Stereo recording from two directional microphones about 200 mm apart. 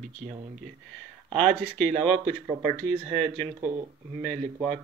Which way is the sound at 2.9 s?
25° right (ahead or behind).